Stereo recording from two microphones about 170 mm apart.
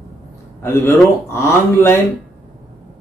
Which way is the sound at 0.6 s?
15° left (ahead or behind).